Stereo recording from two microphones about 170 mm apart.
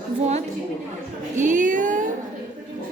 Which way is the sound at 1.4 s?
45° right (ahead or behind).